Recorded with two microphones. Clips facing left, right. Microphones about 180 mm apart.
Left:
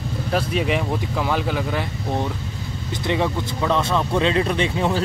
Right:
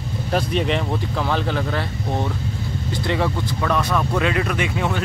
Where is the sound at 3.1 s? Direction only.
20° left (ahead or behind).